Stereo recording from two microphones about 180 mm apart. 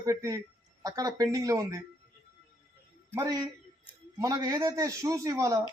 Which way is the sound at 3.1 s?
15° right (ahead or behind).